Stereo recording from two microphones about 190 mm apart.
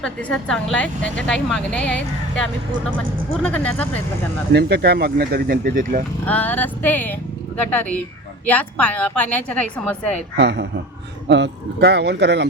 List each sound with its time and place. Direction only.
0.0 s a woman's voice: 5° left (ahead or behind)
4.5 s speech: 60° right (ahead or behind)
6.2 s speech: 10° left (ahead or behind)
10.3 s speech: 65° right (ahead or behind)